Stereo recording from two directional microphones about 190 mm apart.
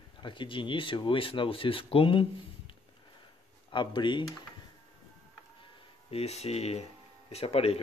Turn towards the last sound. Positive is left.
turn(degrees=30)  # may be behind; listen again after turning